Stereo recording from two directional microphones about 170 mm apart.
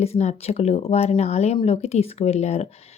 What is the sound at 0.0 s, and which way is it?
Speech, 40° left (ahead or behind).